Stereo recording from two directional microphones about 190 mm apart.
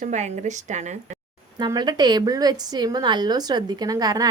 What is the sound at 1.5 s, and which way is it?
A woman's voice, 20° right (ahead or behind).